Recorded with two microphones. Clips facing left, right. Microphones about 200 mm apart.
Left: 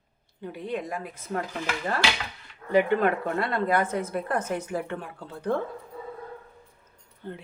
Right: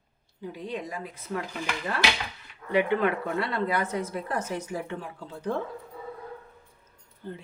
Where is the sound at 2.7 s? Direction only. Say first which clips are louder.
Left 2 dB; 45° left (ahead or behind).